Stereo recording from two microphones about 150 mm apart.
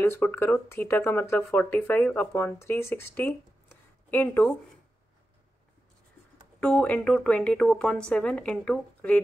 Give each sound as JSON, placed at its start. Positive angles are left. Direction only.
{"t": 0.0, "sound": "speech", "side_deg": 15}
{"t": 6.6, "sound": "speech", "side_deg": 10}